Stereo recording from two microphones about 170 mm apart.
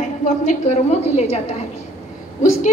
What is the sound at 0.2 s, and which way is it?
A woman's voice, 45° left (ahead or behind).